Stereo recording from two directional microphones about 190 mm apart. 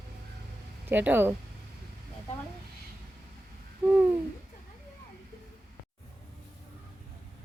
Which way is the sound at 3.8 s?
5° right (ahead or behind).